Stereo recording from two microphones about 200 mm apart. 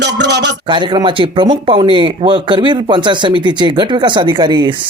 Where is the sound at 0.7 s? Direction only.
25° right (ahead or behind).